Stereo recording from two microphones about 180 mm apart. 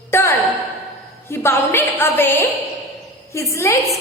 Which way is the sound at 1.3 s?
10° left (ahead or behind).